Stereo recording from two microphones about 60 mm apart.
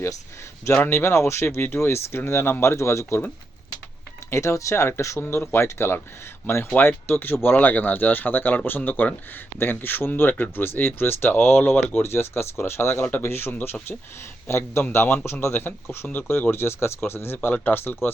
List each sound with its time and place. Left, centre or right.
0.9 s speech: left
4.3 s speech: left
5.2 s speech: left